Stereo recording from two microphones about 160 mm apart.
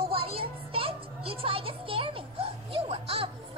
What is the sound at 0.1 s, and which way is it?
Music, 35° right (ahead or behind).